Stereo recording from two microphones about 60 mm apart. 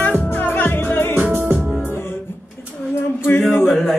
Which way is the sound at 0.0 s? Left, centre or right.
Left.